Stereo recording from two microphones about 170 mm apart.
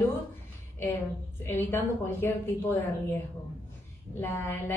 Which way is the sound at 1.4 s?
15° left (ahead or behind).